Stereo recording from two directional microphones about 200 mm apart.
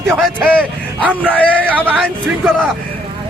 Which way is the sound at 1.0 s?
5° right (ahead or behind).